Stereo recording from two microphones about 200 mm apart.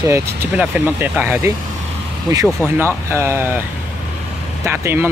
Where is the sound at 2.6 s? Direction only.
10° right (ahead or behind).